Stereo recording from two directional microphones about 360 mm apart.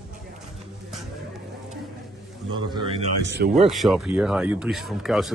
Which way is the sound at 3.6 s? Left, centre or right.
Centre.